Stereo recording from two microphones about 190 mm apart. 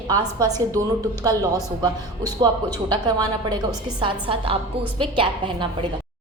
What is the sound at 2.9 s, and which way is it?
A woman's voice, 20° right (ahead or behind).